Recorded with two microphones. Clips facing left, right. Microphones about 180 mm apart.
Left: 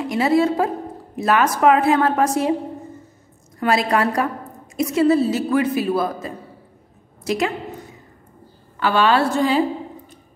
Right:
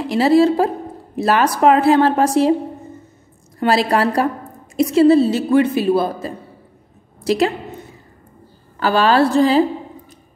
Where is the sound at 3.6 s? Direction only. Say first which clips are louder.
Right 3 dB; 30° right (ahead or behind).